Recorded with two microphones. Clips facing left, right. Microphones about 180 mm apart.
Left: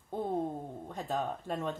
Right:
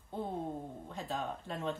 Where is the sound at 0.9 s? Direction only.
45° left (ahead or behind).